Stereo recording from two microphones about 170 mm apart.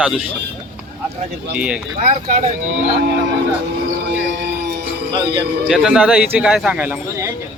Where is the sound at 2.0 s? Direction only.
50° right (ahead or behind).